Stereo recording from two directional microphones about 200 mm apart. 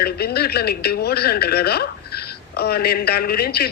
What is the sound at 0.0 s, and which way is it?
A man's voice, 50° left (ahead or behind).